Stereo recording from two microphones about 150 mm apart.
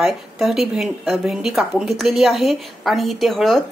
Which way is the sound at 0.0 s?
Centre (ahead or behind).